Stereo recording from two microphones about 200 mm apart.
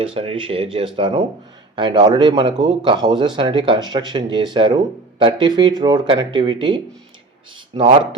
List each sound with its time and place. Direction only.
0.0 s speech: 30° right (ahead or behind)